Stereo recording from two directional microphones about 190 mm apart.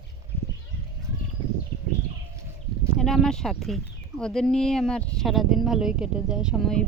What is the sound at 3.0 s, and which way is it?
Speech, centre (ahead or behind).